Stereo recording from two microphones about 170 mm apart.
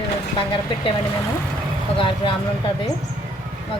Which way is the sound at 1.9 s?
30° left (ahead or behind).